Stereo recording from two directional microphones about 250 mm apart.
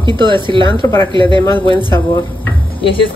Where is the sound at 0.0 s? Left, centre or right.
Centre.